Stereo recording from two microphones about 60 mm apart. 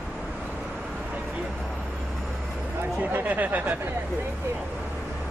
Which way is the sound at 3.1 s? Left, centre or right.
Right.